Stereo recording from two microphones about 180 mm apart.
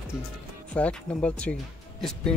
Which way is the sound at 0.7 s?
5° left (ahead or behind).